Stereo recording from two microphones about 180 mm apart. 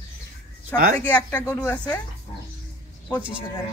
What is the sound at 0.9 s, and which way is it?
Speech, 10° left (ahead or behind).